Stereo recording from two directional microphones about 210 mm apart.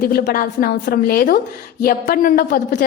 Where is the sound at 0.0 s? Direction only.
45° left (ahead or behind).